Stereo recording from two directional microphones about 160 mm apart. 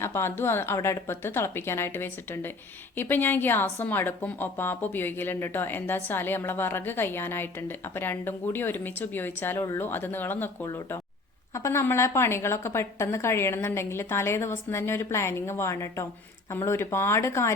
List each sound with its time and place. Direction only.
0.0 s a woman's voice: 15° left (ahead or behind)